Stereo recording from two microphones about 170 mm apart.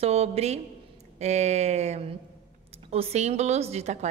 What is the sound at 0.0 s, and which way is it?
A woman's voice, 35° right (ahead or behind).